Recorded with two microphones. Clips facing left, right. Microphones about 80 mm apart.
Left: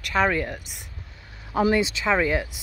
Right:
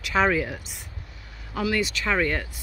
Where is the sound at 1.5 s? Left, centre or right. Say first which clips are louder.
Left 5 dB; left.